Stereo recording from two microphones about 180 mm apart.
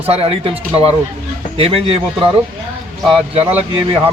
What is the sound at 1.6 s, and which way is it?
A man's voice, 30° right (ahead or behind).